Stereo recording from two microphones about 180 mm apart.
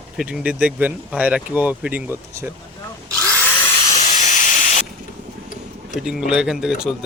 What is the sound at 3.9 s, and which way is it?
Steam, 40° left (ahead or behind).